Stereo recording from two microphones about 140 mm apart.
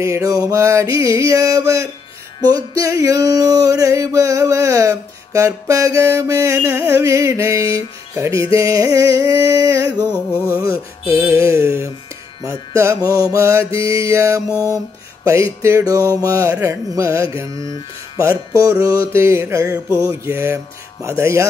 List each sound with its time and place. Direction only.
0.0 s music: 20° right (ahead or behind)
17.6 s speech: 35° left (ahead or behind)
18.1 s music: 25° right (ahead or behind)